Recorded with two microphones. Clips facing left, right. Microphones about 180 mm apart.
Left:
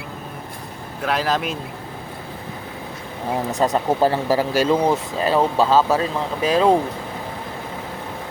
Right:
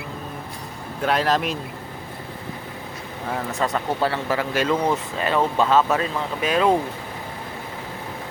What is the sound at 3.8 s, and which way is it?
Speech, 40° left (ahead or behind).